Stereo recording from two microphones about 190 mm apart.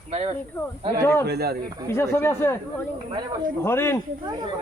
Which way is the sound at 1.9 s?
10° left (ahead or behind).